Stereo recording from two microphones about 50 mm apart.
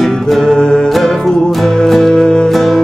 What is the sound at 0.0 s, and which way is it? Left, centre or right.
Music, centre.